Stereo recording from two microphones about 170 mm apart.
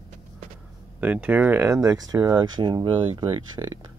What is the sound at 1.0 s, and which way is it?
Speech, 10° right (ahead or behind).